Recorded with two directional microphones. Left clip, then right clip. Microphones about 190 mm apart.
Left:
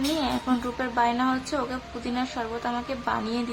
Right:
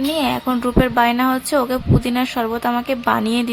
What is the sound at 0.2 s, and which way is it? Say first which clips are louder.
Music: right 8 dB; 30° right (ahead or behind).